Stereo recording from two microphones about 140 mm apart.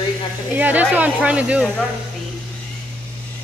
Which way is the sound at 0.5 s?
10° right (ahead or behind).